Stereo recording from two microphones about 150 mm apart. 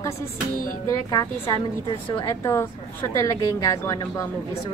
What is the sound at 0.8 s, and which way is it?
Speech, 25° left (ahead or behind).